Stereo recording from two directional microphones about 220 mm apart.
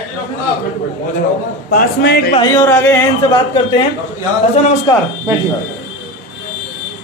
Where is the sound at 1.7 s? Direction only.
45° left (ahead or behind).